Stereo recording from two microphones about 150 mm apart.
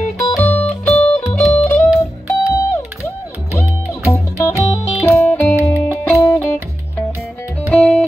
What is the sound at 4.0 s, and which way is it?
Music, 20° left (ahead or behind).